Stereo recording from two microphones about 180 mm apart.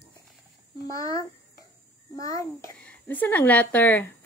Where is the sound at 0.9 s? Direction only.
20° left (ahead or behind).